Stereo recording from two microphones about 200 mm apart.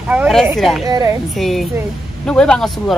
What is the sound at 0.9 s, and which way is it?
Speech, 15° right (ahead or behind).